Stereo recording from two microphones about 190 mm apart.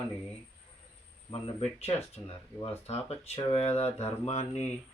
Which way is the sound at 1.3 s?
30° left (ahead or behind).